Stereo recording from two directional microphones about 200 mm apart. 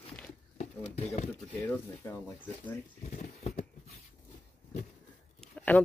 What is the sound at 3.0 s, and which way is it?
Speech, 35° left (ahead or behind).